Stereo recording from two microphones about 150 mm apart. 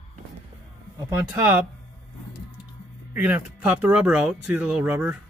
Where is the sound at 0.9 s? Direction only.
20° right (ahead or behind).